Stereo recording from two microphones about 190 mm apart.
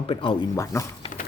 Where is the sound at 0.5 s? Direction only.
15° left (ahead or behind).